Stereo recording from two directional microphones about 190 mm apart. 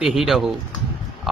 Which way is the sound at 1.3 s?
Centre (ahead or behind).